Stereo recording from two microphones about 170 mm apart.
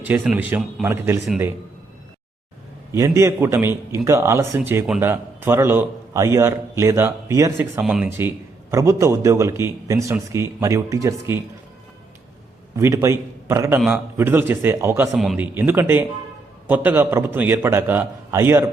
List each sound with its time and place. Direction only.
0.0 s a man's voice: 10° right (ahead or behind)
2.9 s a man's voice: 15° right (ahead or behind)
7.8 s a man's voice: 5° right (ahead or behind)
12.7 s a man's voice: 15° right (ahead or behind)
15.1 s a man's voice: centre (ahead or behind)
15.4 s a man's voice: 10° right (ahead or behind)